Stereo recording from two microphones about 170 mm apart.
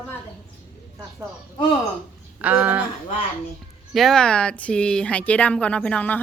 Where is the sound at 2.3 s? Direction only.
10° right (ahead or behind).